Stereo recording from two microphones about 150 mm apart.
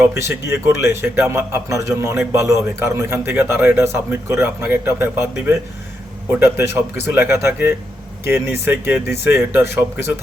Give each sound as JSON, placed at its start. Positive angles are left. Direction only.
{"t": 0.0, "sound": "a man's voice", "side_deg": -20}